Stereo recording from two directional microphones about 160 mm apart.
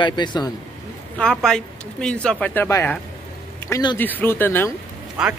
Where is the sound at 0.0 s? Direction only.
30° left (ahead or behind).